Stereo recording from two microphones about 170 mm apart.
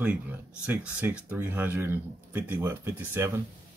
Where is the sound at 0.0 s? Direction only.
10° right (ahead or behind).